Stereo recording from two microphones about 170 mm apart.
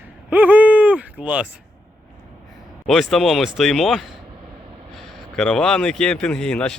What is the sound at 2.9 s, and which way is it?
Speech, centre (ahead or behind).